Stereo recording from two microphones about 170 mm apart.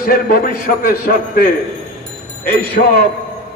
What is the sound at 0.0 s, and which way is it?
A man's voice, 60° left (ahead or behind).